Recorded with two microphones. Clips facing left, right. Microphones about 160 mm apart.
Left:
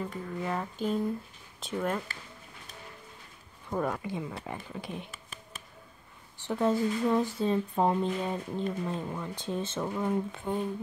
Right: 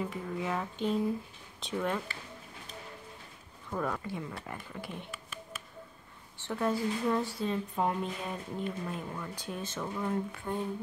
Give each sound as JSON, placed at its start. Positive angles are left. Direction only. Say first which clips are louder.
{"t": 0.0, "sound": "speech", "louder": "even", "side_deg": -5}
{"t": 3.7, "sound": "speech", "louder": "left 3 dB", "side_deg": 15}
{"t": 6.4, "sound": "speech", "louder": "left 4 dB", "side_deg": 20}
{"t": 7.4, "sound": "speech", "louder": "left 5 dB", "side_deg": 30}